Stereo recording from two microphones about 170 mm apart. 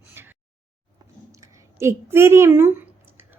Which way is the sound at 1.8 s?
15° right (ahead or behind).